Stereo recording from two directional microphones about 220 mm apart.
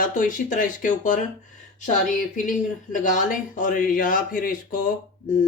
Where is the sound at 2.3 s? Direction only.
35° left (ahead or behind).